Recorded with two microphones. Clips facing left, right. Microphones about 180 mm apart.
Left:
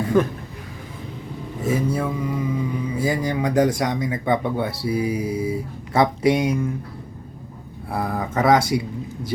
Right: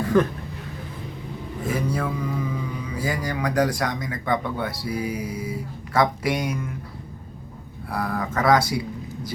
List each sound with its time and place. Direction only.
0.1 s speech: 15° left (ahead or behind)
1.6 s speech: 20° left (ahead or behind)
7.9 s speech: 25° left (ahead or behind)